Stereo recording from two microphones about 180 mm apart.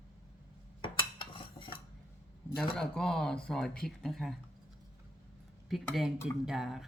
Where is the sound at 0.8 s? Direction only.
25° left (ahead or behind).